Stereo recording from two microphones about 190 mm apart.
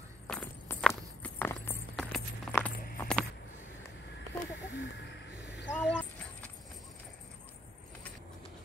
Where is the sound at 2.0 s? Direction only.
Centre (ahead or behind).